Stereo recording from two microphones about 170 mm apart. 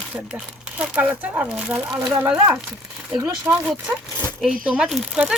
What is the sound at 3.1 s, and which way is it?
Speech, 20° right (ahead or behind).